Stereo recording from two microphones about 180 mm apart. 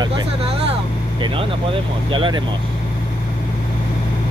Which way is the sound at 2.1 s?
25° right (ahead or behind).